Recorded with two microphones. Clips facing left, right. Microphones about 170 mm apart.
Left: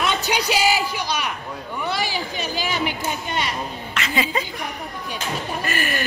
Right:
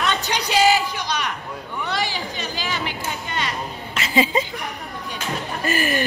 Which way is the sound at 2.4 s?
15° left (ahead or behind).